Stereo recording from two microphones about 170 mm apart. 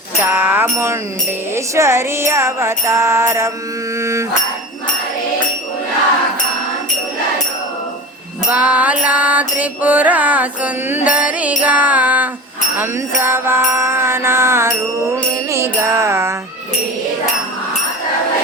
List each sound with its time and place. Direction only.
0.2 s mantra: 10° right (ahead or behind)
8.4 s mantra: 10° right (ahead or behind)